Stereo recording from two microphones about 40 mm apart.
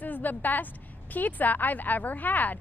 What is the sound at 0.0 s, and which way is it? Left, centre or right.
A woman's voice, left.